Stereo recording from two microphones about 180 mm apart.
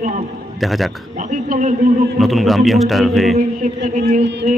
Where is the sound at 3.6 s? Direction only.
45° right (ahead or behind).